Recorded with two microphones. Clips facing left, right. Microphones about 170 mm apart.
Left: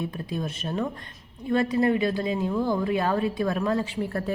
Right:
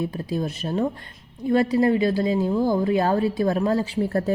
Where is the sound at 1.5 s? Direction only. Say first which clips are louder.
Right 3 dB; 35° right (ahead or behind).